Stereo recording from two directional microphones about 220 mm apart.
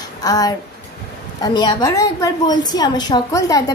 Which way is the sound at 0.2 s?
15° left (ahead or behind).